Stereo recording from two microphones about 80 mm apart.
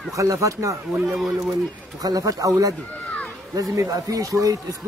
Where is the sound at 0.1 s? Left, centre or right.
Right.